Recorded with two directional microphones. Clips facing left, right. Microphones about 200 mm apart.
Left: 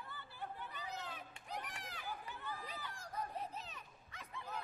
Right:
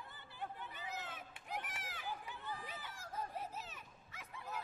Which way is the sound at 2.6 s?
5° right (ahead or behind).